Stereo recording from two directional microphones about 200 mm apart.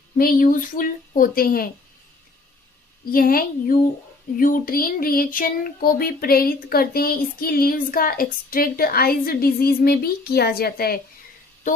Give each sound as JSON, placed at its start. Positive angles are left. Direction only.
{"t": 0.2, "sound": "speech", "side_deg": 45}
{"t": 3.1, "sound": "speech", "side_deg": 45}
{"t": 11.6, "sound": "music", "side_deg": 40}